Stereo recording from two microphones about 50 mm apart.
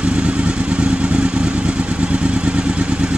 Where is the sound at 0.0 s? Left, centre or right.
Right.